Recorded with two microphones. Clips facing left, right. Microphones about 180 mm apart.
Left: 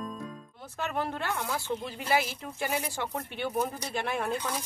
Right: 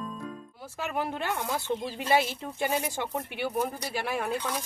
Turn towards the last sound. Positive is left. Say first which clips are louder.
# right 1 dB
turn(degrees=-5)  # may be behind; listen again after turning